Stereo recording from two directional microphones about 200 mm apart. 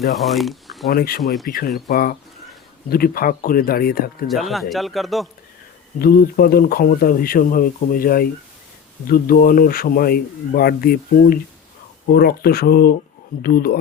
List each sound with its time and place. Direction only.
0.2 s speech: centre (ahead or behind)
0.9 s speech: 50° left (ahead or behind)
1.2 s a man's voice: centre (ahead or behind)
1.5 s speech: 45° left (ahead or behind)
4.3 s a man's voice: centre (ahead or behind)
6.0 s speech: 50° left (ahead or behind)